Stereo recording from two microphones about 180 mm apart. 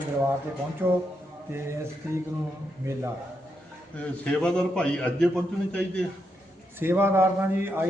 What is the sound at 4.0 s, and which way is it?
A man's voice, 5° left (ahead or behind).